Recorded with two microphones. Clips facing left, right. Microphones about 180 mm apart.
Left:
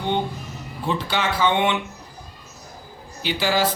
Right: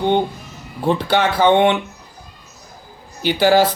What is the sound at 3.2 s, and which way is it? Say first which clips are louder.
Speech: right 9 dB; 60° right (ahead or behind).